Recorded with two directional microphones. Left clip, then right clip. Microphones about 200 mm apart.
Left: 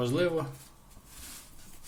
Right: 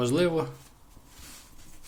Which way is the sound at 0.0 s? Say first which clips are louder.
Right 3 dB; 25° right (ahead or behind).